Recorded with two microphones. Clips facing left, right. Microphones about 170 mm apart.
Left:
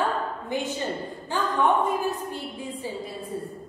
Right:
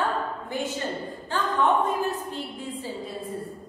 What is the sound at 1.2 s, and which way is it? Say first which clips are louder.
A woman's voice: left 1 dB; 15° left (ahead or behind).